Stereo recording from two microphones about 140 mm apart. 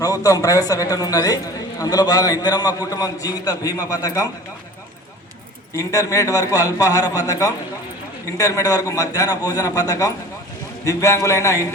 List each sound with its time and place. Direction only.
0.0 s a man's voice: 25° left (ahead or behind)
5.7 s a man's voice: 25° left (ahead or behind)